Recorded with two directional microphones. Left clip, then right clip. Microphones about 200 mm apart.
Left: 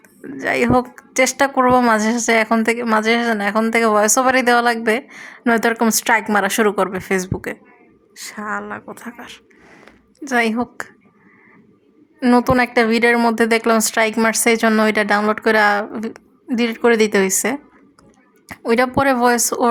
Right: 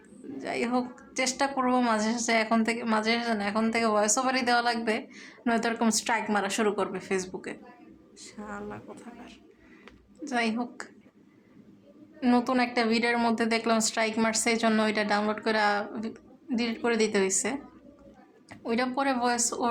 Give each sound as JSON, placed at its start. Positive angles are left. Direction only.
{"t": 0.3, "sound": "a woman's voice", "side_deg": 45}
{"t": 12.2, "sound": "a woman's voice", "side_deg": 40}